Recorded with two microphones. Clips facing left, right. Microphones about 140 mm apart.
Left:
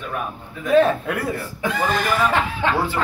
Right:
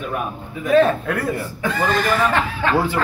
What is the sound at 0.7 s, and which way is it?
Speech, 5° left (ahead or behind).